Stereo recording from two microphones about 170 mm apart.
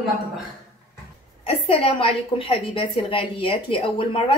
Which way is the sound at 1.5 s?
35° left (ahead or behind).